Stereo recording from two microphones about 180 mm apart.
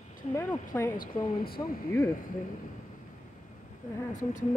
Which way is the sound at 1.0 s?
55° left (ahead or behind).